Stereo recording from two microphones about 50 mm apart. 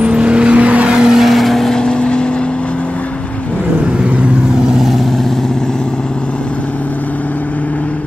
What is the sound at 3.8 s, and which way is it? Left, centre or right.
Vehicle, right.